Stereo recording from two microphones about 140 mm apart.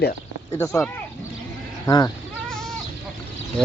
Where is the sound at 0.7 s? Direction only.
20° left (ahead or behind).